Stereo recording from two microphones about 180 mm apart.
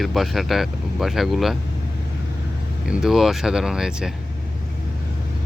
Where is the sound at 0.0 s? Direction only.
Centre (ahead or behind).